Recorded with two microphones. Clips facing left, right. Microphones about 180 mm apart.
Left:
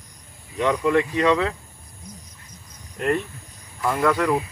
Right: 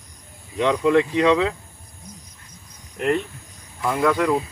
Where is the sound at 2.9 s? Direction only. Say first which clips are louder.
Right 1 dB; 15° right (ahead or behind).